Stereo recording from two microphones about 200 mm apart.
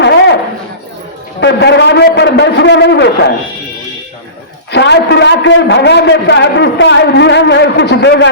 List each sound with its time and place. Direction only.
0.0 s a sound: 60° left (ahead or behind)
1.4 s a man's voice: 60° left (ahead or behind)
4.7 s a man's voice: 60° left (ahead or behind)